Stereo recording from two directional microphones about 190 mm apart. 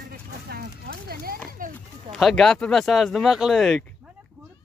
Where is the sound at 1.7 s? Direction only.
Centre (ahead or behind).